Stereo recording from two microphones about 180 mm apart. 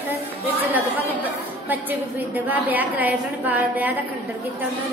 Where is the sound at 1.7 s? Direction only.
10° right (ahead or behind).